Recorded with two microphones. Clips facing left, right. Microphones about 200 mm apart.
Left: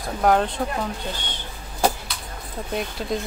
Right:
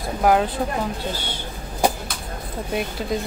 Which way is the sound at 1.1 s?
10° right (ahead or behind).